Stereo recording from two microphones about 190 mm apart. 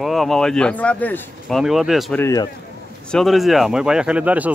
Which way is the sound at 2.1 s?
15° left (ahead or behind).